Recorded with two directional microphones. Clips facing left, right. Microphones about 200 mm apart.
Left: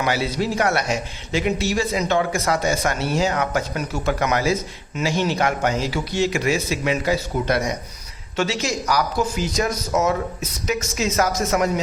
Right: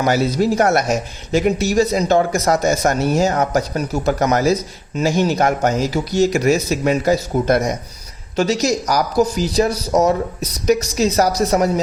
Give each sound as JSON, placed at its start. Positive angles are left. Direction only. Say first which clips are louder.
{"t": 0.0, "sound": "a man's voice", "louder": "right 6 dB", "side_deg": -45}